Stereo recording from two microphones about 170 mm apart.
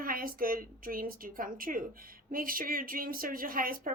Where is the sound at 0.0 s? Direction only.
55° right (ahead or behind).